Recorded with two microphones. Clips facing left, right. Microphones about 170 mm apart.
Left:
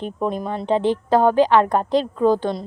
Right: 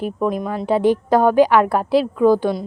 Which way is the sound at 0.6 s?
10° right (ahead or behind).